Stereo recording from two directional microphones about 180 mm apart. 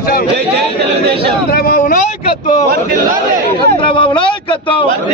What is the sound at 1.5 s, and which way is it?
Speech, 55° left (ahead or behind).